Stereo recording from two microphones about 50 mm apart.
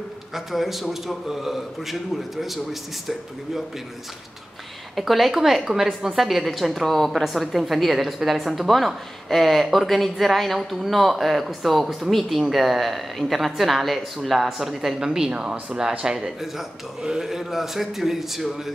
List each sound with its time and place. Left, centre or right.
0.3 s speech: centre
4.9 s speech: centre
15.3 s speech: right; by 18.7 s centre